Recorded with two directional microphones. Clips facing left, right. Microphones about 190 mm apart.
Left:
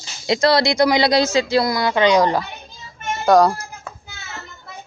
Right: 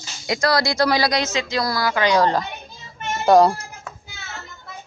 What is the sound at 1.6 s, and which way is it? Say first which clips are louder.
Speech: left 4 dB; 20° left (ahead or behind).